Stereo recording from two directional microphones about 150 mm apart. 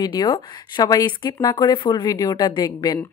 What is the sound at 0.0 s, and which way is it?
Speech, 30° left (ahead or behind).